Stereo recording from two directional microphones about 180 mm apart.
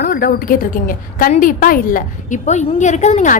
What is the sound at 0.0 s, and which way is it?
A woman's voice, 55° left (ahead or behind).